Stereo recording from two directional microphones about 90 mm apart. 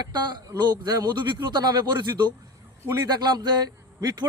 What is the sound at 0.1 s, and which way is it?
A man's voice, 55° right (ahead or behind).